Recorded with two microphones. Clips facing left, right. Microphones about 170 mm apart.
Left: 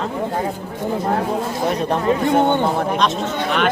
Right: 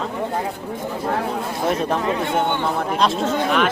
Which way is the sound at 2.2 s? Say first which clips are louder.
Left 5 dB; 40° left (ahead or behind).